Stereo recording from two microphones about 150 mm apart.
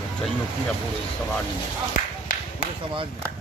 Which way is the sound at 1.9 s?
65° left (ahead or behind).